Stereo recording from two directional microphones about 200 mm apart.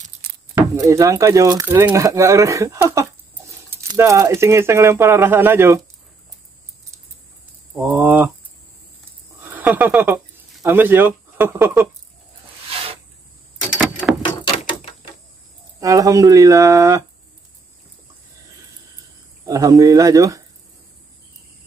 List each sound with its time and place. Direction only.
0.2 s keys jangling: 50° right (ahead or behind)
0.6 s speech: 15° right (ahead or behind)
7.7 s speech: 10° right (ahead or behind)
9.4 s speech: 10° right (ahead or behind)
15.8 s speech: 15° right (ahead or behind)
19.4 s speech: 15° right (ahead or behind)